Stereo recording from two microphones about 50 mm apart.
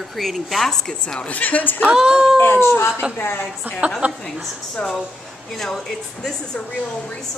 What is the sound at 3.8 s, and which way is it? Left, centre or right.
Speech, right.